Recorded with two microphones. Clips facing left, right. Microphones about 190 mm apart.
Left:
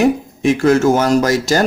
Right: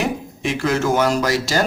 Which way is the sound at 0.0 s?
45° left (ahead or behind).